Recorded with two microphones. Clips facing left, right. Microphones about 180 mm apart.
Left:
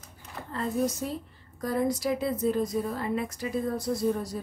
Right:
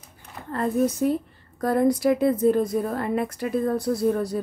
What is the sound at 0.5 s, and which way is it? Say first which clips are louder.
Speech: right 6 dB; 60° right (ahead or behind).